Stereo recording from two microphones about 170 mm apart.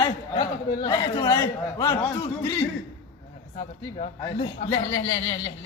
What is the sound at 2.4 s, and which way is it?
Speech, 15° left (ahead or behind).